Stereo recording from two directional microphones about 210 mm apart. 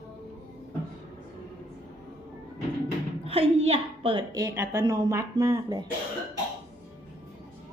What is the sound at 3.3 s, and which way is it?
A woman's voice, 30° right (ahead or behind).